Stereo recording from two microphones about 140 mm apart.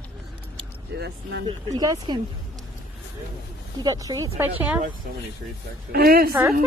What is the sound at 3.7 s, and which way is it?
Speech, 25° right (ahead or behind).